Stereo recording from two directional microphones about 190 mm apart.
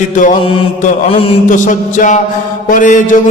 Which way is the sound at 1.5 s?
40° left (ahead or behind).